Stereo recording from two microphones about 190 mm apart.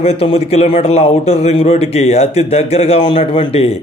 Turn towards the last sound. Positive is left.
turn(degrees=30)  # may be behind; listen again after turning